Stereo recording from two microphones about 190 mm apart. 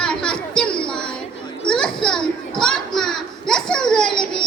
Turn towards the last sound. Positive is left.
turn(degrees=5)  # may be behind; listen again after turning